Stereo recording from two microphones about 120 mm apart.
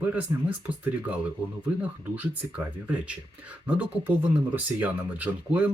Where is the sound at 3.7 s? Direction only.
10° right (ahead or behind).